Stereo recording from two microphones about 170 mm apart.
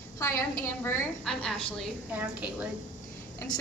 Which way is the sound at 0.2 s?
15° left (ahead or behind).